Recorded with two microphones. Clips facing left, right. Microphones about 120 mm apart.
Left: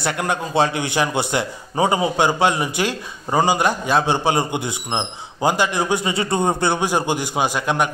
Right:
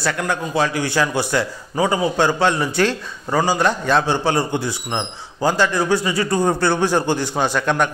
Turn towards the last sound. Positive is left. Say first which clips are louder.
# right 1 dB
turn(degrees=10)  # may be behind; listen again after turning